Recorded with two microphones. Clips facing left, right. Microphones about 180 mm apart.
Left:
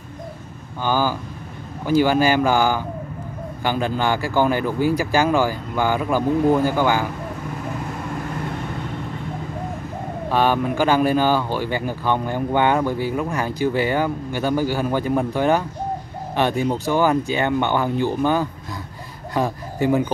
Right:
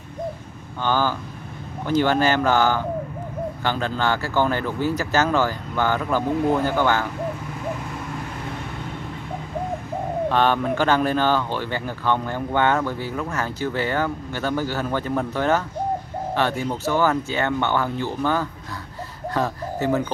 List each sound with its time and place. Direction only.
0.8 s speech: 10° left (ahead or behind)
10.3 s speech: 10° left (ahead or behind)